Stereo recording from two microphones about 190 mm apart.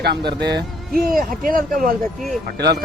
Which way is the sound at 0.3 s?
60° right (ahead or behind).